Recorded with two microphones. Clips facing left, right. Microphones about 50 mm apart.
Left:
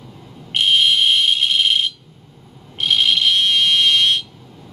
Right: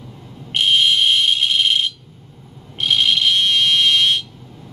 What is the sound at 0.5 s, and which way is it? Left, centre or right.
Fire alarm, centre.